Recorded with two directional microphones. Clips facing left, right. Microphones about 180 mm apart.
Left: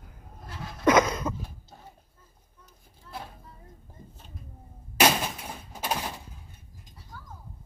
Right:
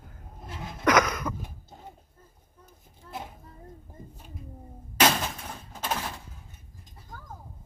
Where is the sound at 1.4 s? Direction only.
20° right (ahead or behind).